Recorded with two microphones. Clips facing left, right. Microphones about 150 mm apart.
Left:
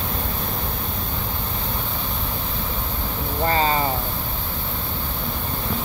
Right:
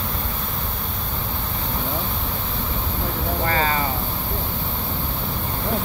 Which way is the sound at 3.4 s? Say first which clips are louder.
Left 3 dB; 25° left (ahead or behind).